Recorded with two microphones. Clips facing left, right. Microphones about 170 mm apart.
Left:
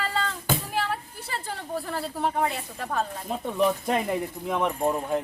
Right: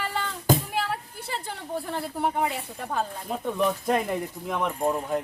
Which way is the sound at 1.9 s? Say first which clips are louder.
Right 1 dB; 15° right (ahead or behind).